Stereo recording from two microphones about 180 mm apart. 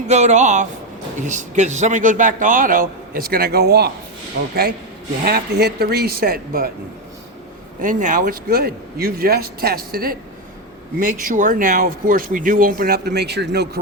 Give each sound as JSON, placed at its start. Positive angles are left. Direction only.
{"t": 0.1, "sound": "a man's voice", "side_deg": -40}
{"t": 7.8, "sound": "a man's voice", "side_deg": -45}